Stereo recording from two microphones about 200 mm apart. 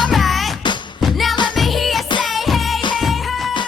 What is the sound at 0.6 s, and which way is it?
Music, 25° left (ahead or behind).